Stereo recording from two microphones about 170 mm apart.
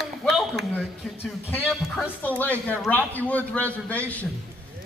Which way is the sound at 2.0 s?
10° left (ahead or behind).